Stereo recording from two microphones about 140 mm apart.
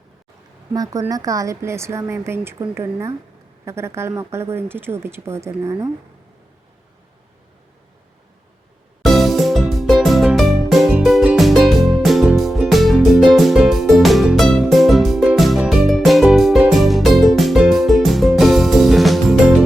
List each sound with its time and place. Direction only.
0.7 s speech: 25° right (ahead or behind)
9.0 s music: centre (ahead or behind)